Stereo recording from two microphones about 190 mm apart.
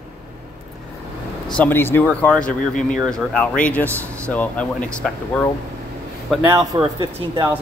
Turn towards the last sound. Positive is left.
turn(degrees=-20)  # may be behind; listen again after turning